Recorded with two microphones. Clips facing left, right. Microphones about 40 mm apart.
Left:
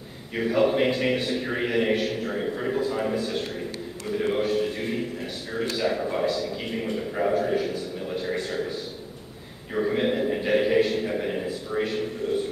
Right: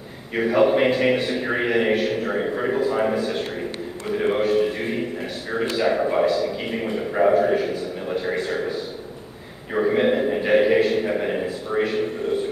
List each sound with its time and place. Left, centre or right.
0.4 s a man's voice: centre
4.1 s a man's voice: right
9.8 s a man's voice: right